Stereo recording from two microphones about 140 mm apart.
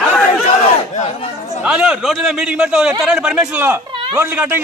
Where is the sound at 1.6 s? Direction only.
5° right (ahead or behind).